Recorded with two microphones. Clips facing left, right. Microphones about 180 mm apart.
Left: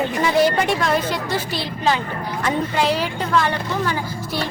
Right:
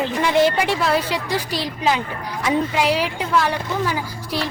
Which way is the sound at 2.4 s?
10° right (ahead or behind).